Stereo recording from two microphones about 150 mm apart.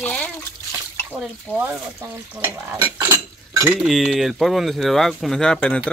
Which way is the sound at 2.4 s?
15° right (ahead or behind).